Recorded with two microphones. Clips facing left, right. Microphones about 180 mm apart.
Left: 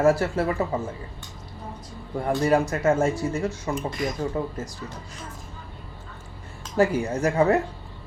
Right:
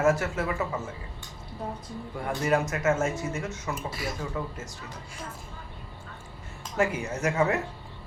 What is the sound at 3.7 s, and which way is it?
Speech, 5° right (ahead or behind).